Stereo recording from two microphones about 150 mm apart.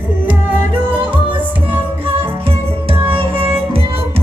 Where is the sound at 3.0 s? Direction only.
35° right (ahead or behind).